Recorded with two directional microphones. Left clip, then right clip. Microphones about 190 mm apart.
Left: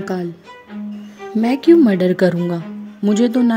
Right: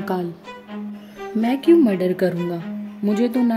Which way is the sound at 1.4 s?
30° left (ahead or behind).